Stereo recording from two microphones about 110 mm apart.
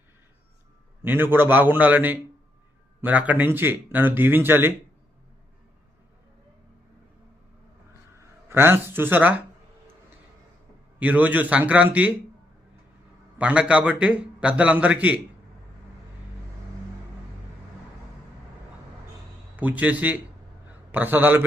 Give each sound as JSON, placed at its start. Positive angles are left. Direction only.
{"t": 1.0, "sound": "a man's voice", "side_deg": -20}
{"t": 8.4, "sound": "speech", "side_deg": -20}
{"t": 11.0, "sound": "a man's voice", "side_deg": -15}
{"t": 13.4, "sound": "a man's voice", "side_deg": -10}
{"t": 19.5, "sound": "a man's voice", "side_deg": -15}